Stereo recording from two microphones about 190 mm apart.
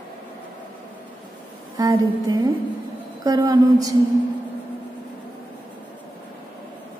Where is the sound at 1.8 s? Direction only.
20° right (ahead or behind).